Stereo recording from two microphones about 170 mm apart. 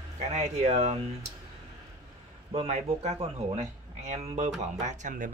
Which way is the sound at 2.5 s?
40° right (ahead or behind).